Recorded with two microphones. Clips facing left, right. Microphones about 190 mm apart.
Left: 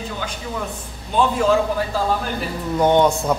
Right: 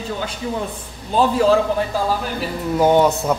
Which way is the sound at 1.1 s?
35° right (ahead or behind).